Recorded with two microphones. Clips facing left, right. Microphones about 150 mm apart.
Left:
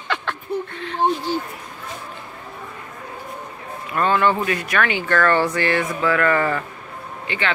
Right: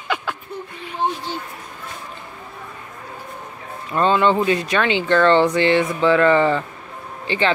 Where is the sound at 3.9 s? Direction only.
20° right (ahead or behind).